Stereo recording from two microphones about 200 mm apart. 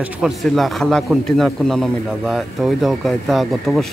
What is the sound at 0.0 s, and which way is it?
A man's voice, centre (ahead or behind).